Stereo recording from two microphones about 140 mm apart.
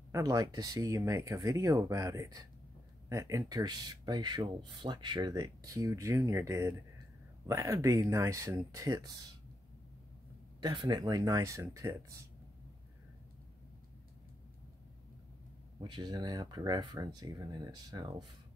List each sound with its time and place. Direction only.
0.1 s speech: 25° right (ahead or behind)
10.6 s speech: 30° right (ahead or behind)
15.8 s speech: 30° right (ahead or behind)